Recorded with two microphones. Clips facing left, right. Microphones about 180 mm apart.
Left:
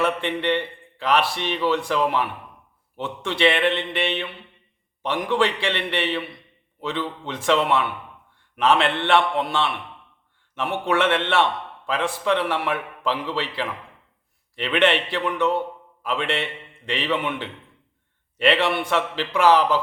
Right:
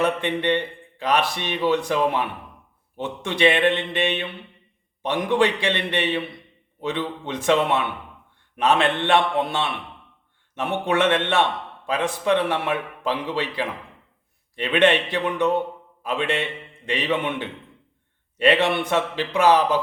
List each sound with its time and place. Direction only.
0.0 s a man's voice: 15° right (ahead or behind)
14.6 s a man's voice: 20° right (ahead or behind)